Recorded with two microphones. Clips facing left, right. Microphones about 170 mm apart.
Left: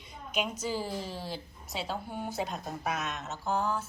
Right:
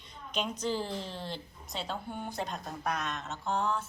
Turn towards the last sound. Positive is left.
turn(degrees=5)  # may be behind; listen again after turning